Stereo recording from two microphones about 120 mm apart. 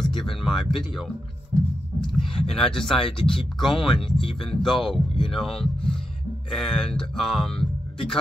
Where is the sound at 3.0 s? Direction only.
50° left (ahead or behind).